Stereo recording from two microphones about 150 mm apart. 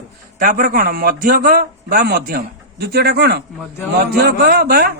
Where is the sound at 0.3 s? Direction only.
70° right (ahead or behind).